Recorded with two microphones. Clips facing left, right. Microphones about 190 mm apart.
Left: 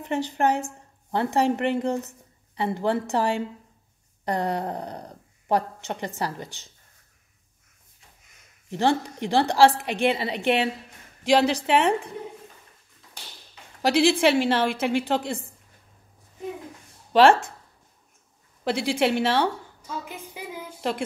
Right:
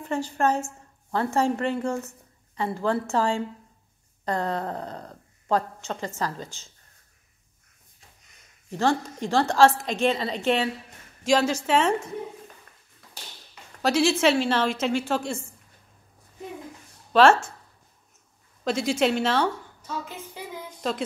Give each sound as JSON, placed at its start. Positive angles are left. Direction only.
{"t": 0.0, "sound": "speech", "side_deg": 20}
{"t": 8.7, "sound": "speech", "side_deg": 15}
{"t": 13.8, "sound": "speech", "side_deg": 15}
{"t": 17.1, "sound": "speech", "side_deg": 15}
{"t": 18.6, "sound": "speech", "side_deg": 15}
{"t": 20.4, "sound": "a sound", "side_deg": 10}